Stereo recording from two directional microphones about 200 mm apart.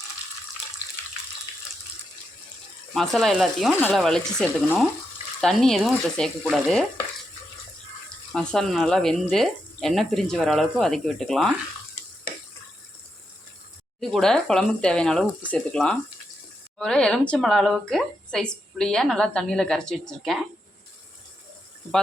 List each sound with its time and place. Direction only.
2.9 s speech: centre (ahead or behind)
8.3 s speech: centre (ahead or behind)
14.0 s speech: centre (ahead or behind)